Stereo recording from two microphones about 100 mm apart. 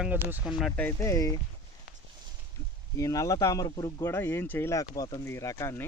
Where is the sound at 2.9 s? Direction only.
35° left (ahead or behind).